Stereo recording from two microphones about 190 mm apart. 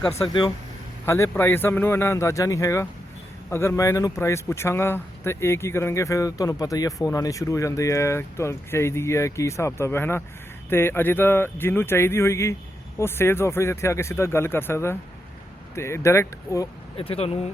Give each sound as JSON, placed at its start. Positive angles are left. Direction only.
{"t": 0.1, "sound": "speech", "side_deg": 25}
{"t": 1.0, "sound": "speech", "side_deg": 15}
{"t": 17.0, "sound": "speech", "side_deg": 30}